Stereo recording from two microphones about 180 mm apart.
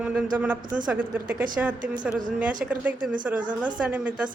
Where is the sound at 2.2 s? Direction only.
45° right (ahead or behind).